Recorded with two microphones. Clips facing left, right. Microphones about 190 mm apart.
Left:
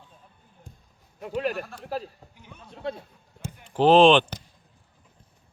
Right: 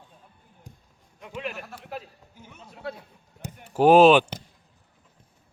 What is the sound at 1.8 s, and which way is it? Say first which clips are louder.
Speech: left 5 dB; 35° left (ahead or behind).